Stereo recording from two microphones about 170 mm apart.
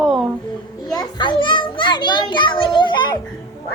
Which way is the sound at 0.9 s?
30° left (ahead or behind).